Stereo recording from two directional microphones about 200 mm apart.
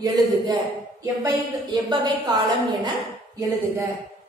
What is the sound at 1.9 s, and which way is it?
Speech, 20° right (ahead or behind).